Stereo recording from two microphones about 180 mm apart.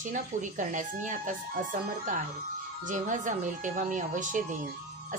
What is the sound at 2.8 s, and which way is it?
Speech, 45° right (ahead or behind).